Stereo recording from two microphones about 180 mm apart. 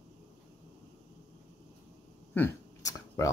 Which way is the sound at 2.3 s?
15° left (ahead or behind).